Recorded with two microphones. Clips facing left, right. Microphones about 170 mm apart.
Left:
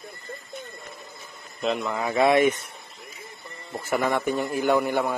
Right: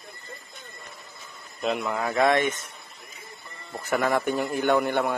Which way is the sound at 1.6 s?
5° right (ahead or behind).